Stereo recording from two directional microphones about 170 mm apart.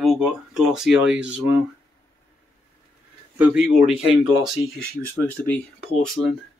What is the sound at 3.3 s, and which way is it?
Speech, 5° right (ahead or behind).